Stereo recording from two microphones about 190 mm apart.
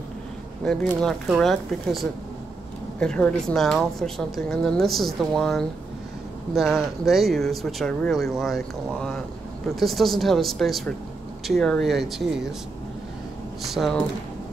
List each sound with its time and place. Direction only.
0.7 s speech: centre (ahead or behind)
13.7 s speech: centre (ahead or behind)